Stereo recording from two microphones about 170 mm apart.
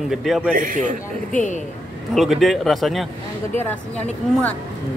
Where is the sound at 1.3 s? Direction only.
50° left (ahead or behind).